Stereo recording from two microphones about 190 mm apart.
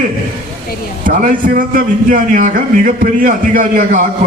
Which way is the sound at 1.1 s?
45° right (ahead or behind).